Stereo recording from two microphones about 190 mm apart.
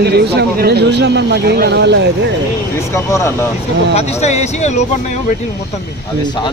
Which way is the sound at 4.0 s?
35° left (ahead or behind).